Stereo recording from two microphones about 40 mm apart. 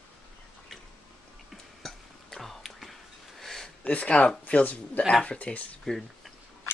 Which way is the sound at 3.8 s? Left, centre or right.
Left.